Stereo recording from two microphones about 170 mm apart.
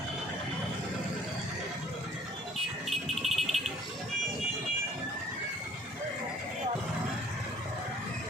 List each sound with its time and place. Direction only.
2.9 s music: centre (ahead or behind)